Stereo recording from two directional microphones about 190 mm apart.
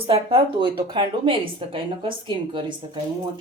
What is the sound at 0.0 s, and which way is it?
Speech, 30° right (ahead or behind).